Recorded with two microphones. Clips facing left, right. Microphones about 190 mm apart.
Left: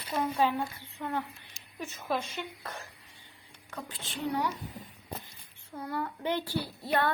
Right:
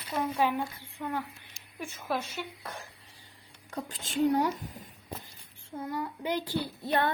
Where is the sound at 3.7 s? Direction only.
45° right (ahead or behind).